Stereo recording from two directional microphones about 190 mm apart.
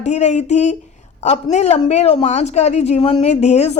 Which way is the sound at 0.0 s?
35° left (ahead or behind).